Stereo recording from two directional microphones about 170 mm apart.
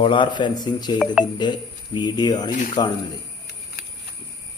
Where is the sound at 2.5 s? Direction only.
50° left (ahead or behind).